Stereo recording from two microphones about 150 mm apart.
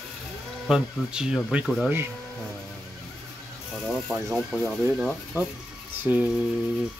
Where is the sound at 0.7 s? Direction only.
5° right (ahead or behind).